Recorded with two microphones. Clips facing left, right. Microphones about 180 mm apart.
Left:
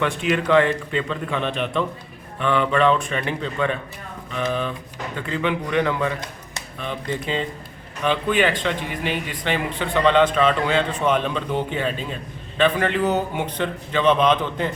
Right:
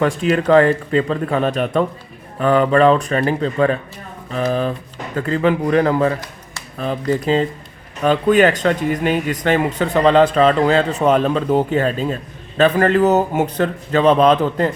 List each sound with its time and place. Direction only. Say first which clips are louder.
0.0 s speech: right 5 dB; 40° right (ahead or behind)